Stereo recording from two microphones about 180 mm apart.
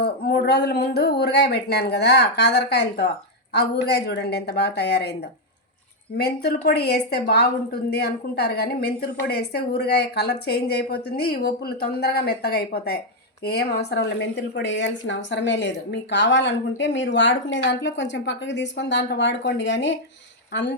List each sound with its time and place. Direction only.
0.0 s a woman's voice: 60° left (ahead or behind)
6.1 s a woman's voice: 65° left (ahead or behind); by 20.7 s 80° left